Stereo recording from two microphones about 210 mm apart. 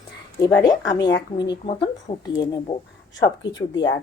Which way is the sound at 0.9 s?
20° left (ahead or behind).